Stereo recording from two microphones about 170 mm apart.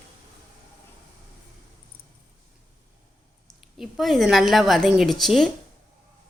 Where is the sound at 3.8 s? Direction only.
Centre (ahead or behind).